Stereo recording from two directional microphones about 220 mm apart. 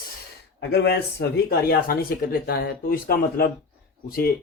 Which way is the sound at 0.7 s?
50° left (ahead or behind).